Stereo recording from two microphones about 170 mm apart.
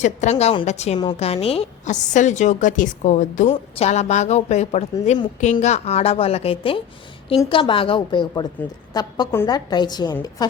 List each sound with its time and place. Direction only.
0.0 s a woman's voice: 45° left (ahead or behind); by 10.4 s 25° left (ahead or behind)